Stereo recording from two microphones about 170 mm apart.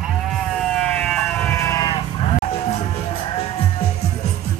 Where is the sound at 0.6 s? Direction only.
5° left (ahead or behind).